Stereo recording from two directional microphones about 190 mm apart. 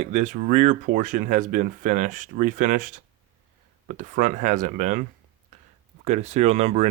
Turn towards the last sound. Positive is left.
turn(degrees=-35)  # may be behind; listen again after turning